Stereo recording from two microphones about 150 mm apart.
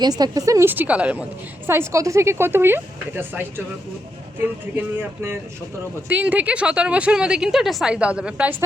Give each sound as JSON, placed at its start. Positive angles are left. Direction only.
{"t": 0.0, "sound": "a woman's voice", "side_deg": -25}
{"t": 4.9, "sound": "a woman's voice", "side_deg": -15}